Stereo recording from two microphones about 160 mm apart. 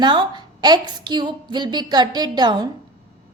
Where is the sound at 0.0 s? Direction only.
30° right (ahead or behind).